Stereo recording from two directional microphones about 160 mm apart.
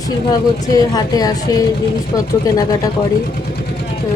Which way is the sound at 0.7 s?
25° left (ahead or behind).